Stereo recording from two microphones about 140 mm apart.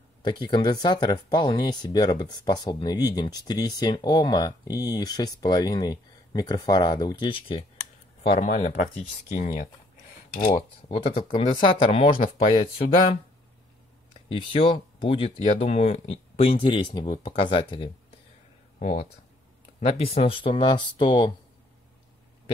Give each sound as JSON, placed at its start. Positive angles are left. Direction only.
{"t": 0.2, "sound": "speech", "side_deg": 35}
{"t": 8.4, "sound": "speech", "side_deg": 55}
{"t": 10.5, "sound": "speech", "side_deg": 40}
{"t": 14.3, "sound": "speech", "side_deg": 40}
{"t": 17.0, "sound": "speech", "side_deg": 60}
{"t": 17.4, "sound": "speech", "side_deg": 40}
{"t": 18.8, "sound": "speech", "side_deg": 60}
{"t": 19.8, "sound": "speech", "side_deg": 45}